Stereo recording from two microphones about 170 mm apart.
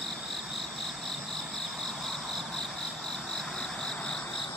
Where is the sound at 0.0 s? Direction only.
Centre (ahead or behind).